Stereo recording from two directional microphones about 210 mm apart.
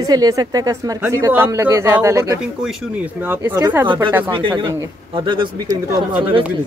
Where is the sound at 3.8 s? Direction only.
25° right (ahead or behind).